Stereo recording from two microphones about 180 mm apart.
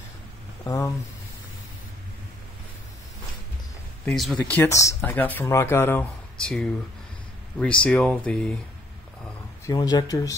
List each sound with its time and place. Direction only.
0.7 s speech: 20° left (ahead or behind)
4.0 s speech: centre (ahead or behind)
9.7 s speech: 20° left (ahead or behind)